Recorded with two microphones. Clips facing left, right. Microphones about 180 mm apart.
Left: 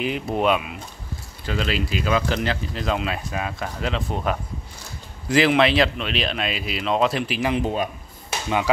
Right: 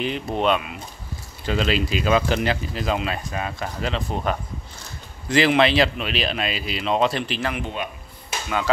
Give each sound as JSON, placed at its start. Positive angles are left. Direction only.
{"t": 0.0, "sound": "speech", "side_deg": 5}
{"t": 1.4, "sound": "speech", "side_deg": -20}
{"t": 7.5, "sound": "speech", "side_deg": 40}
{"t": 8.3, "sound": "music", "side_deg": 20}